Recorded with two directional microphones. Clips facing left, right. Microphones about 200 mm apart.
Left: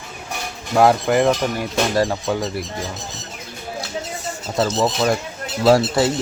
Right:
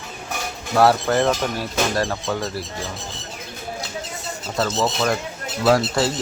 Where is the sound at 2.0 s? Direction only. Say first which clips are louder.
Left 4 dB; 20° left (ahead or behind).